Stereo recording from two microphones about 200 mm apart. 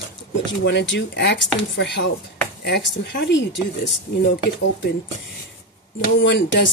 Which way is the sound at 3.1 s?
55° left (ahead or behind).